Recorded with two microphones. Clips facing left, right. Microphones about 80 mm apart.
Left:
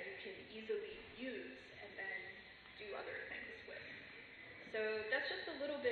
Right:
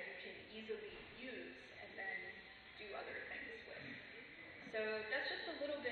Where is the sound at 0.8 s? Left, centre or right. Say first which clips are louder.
Left 4 dB; left.